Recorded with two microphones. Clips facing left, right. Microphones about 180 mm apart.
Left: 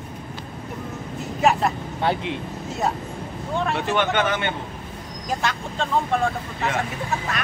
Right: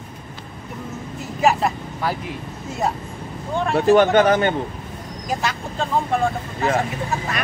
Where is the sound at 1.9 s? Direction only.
25° left (ahead or behind).